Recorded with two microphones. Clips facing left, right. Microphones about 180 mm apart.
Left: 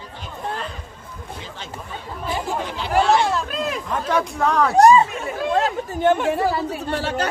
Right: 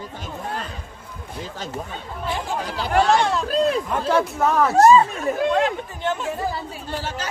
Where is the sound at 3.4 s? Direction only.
35° right (ahead or behind).